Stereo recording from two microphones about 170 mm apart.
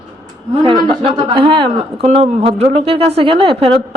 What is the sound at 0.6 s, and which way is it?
Speech, 30° right (ahead or behind).